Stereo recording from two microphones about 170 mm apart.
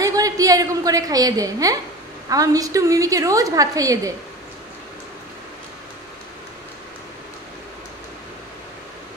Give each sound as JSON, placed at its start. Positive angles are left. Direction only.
{"t": 0.0, "sound": "a woman's voice", "side_deg": -20}